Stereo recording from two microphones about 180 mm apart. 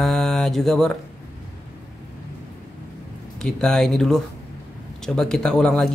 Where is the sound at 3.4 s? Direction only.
5° left (ahead or behind).